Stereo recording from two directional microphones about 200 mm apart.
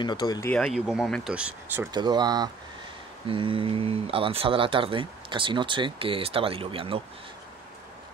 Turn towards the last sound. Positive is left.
turn(degrees=-25)  # may be behind; listen again after turning